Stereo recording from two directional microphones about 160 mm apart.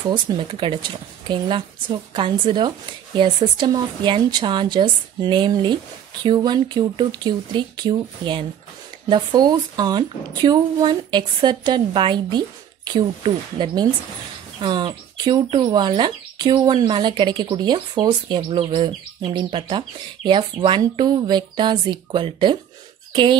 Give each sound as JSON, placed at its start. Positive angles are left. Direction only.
{"t": 0.1, "sound": "speech", "side_deg": -30}